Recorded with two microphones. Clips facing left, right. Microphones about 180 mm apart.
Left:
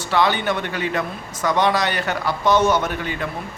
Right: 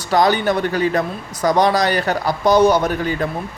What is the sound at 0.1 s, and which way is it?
A man's voice, 40° right (ahead or behind).